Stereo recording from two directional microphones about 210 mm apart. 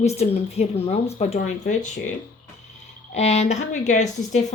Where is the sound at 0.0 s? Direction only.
30° left (ahead or behind).